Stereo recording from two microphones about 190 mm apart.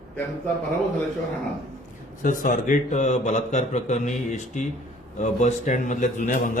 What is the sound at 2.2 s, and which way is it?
A man's voice, 45° left (ahead or behind).